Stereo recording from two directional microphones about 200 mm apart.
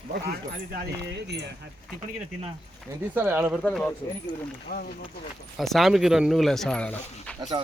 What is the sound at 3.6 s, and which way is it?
Speech, 5° left (ahead or behind).